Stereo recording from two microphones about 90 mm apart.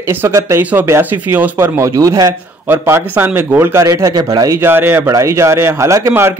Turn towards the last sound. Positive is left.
turn(degrees=-35)  # may be behind; listen again after turning